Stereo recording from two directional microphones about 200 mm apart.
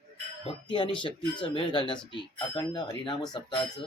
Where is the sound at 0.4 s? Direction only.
25° left (ahead or behind).